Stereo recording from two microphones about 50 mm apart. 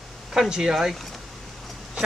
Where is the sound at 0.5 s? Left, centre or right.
Centre.